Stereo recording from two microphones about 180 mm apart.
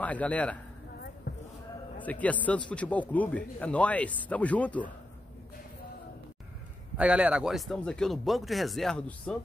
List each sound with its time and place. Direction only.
0.0 s a man's voice: 10° left (ahead or behind)
1.3 s a sound: 65° left (ahead or behind)
2.0 s a man's voice: 10° left (ahead or behind)
7.0 s speech: 5° right (ahead or behind)